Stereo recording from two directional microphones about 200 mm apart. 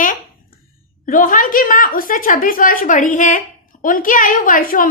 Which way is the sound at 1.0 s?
45° left (ahead or behind).